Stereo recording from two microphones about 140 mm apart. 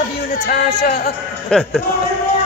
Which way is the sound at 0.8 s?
90° left.